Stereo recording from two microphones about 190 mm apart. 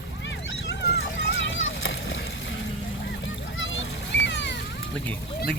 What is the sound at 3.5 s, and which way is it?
Splash, 90° left.